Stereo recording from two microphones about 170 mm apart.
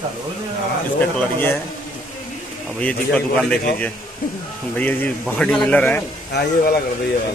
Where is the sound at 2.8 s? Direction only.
5° left (ahead or behind).